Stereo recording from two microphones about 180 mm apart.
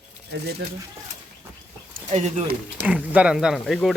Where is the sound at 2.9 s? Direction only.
5° right (ahead or behind).